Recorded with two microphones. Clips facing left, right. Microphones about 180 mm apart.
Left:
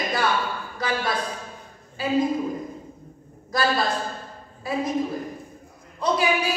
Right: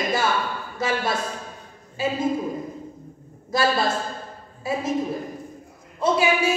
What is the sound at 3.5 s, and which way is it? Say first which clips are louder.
Speech: right 2 dB; 25° right (ahead or behind).